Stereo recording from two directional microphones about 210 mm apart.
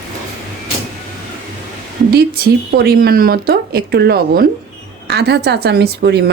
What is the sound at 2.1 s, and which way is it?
Speech, 45° right (ahead or behind).